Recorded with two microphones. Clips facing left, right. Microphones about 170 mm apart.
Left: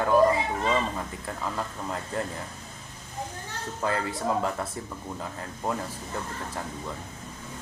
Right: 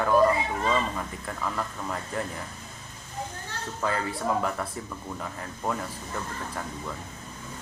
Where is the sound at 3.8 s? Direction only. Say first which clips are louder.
Even; 25° left (ahead or behind).